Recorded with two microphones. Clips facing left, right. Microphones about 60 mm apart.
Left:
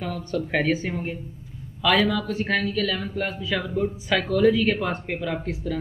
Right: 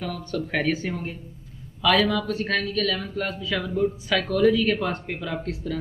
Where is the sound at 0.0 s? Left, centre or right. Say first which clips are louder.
Left 1 dB; centre.